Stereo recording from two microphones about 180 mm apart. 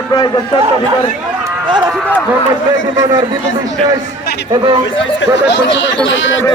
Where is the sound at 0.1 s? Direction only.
25° left (ahead or behind).